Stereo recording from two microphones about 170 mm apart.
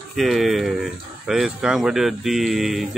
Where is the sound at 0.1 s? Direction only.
Centre (ahead or behind).